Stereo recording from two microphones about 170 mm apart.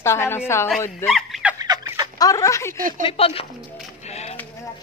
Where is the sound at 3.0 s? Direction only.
35° left (ahead or behind).